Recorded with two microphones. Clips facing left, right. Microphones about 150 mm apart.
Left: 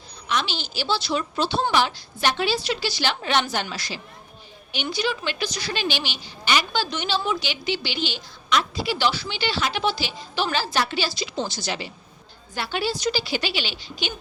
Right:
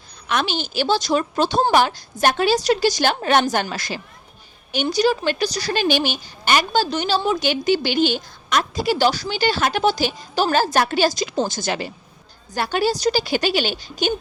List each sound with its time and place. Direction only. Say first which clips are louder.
0.3 s a woman's voice: right 4 dB; 50° right (ahead or behind)